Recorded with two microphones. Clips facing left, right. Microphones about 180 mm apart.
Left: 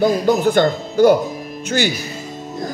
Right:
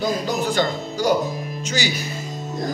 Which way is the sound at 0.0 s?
55° left (ahead or behind).